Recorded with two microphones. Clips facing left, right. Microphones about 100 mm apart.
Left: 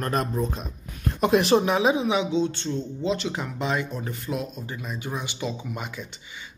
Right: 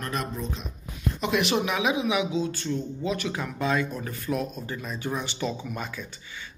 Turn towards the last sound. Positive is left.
turn(degrees=15)  # may be behind; listen again after turning